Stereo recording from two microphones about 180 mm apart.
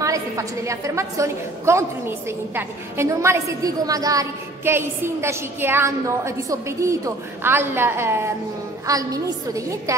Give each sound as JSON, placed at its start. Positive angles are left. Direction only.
{"t": 0.0, "sound": "a woman's voice", "side_deg": -15}